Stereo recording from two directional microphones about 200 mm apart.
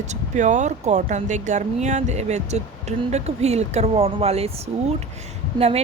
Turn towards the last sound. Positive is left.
turn(degrees=-30)  # may be behind; listen again after turning